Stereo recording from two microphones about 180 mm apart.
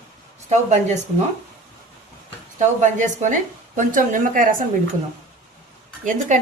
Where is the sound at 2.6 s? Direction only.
40° right (ahead or behind).